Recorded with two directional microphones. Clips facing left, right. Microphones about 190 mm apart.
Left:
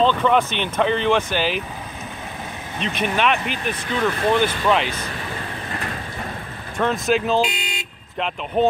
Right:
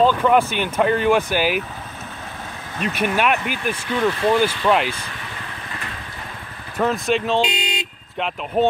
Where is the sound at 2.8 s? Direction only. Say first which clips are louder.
Right 1 dB; 5° right (ahead or behind).